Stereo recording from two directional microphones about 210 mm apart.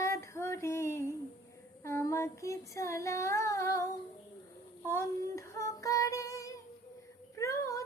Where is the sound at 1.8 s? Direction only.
15° left (ahead or behind).